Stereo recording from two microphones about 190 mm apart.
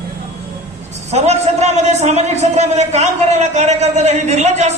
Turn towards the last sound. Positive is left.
turn(degrees=-35)  # may be behind; listen again after turning